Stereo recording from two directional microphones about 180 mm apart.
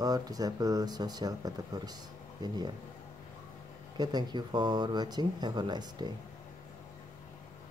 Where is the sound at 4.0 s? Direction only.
25° right (ahead or behind).